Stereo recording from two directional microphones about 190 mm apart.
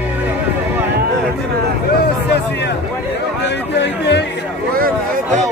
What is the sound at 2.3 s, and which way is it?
Speech, 60° left (ahead or behind).